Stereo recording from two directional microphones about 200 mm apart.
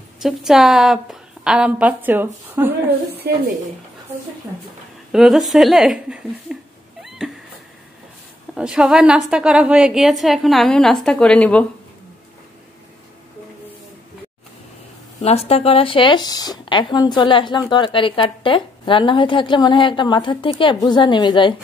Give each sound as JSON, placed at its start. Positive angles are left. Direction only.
{"t": 0.2, "sound": "a woman's voice", "side_deg": 0}
{"t": 3.3, "sound": "speech", "side_deg": -50}
{"t": 5.1, "sound": "speech", "side_deg": 0}
{"t": 8.5, "sound": "a woman's voice", "side_deg": -5}
{"t": 15.2, "sound": "a woman's voice", "side_deg": 30}